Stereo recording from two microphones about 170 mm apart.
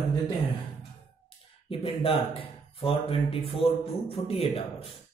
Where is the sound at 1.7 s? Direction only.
35° left (ahead or behind).